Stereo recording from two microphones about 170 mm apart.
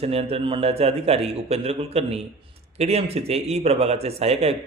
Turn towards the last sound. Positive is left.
turn(degrees=-35)  # may be behind; listen again after turning